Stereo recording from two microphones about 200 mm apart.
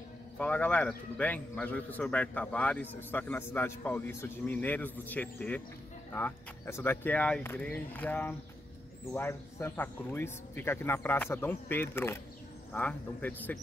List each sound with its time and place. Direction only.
0.4 s a man's voice: 5° left (ahead or behind)